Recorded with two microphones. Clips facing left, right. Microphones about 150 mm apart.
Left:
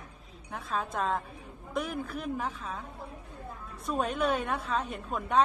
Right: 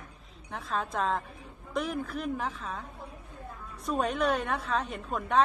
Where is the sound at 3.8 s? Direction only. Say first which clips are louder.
Right 1 dB; centre (ahead or behind).